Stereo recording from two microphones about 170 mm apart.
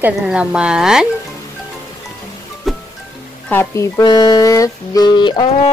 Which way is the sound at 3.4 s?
15° left (ahead or behind).